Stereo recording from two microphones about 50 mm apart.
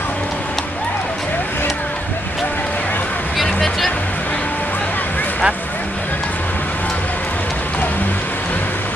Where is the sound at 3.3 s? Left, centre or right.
Centre.